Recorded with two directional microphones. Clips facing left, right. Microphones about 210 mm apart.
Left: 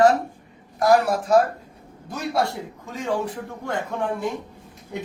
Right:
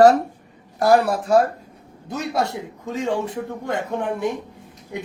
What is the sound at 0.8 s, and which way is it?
A man's voice, 30° right (ahead or behind).